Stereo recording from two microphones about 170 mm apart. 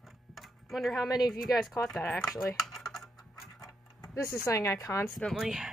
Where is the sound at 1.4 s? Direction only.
Centre (ahead or behind).